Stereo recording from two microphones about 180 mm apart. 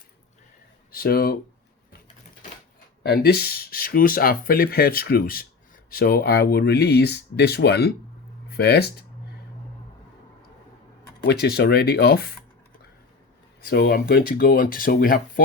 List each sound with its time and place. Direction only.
0.9 s speech: 55° left (ahead or behind)
3.0 s speech: 60° left (ahead or behind)
11.3 s speech: 65° left (ahead or behind)
13.7 s speech: 60° left (ahead or behind)